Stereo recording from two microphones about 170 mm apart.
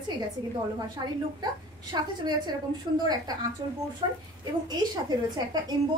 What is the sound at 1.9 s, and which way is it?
Speech, 25° right (ahead or behind).